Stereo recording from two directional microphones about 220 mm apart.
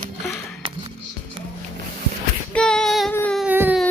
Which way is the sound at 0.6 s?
25° right (ahead or behind).